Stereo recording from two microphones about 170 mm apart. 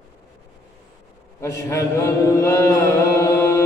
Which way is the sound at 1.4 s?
15° left (ahead or behind).